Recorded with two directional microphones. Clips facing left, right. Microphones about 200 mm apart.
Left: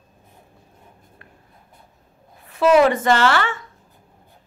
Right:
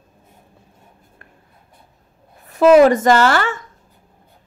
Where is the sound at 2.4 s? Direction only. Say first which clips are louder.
Right 5 dB; 40° right (ahead or behind).